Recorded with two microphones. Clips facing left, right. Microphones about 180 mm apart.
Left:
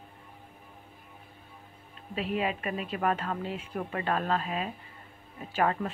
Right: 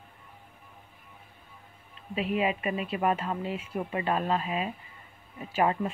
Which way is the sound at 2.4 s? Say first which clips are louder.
Right 3 dB; 10° right (ahead or behind).